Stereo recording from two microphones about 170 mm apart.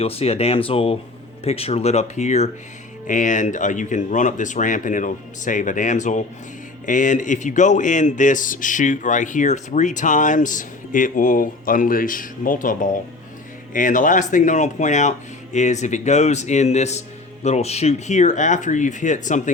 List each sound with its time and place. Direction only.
0.0 s speech: 35° left (ahead or behind)